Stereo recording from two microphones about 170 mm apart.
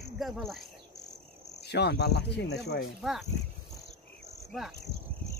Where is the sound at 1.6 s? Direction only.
80° left.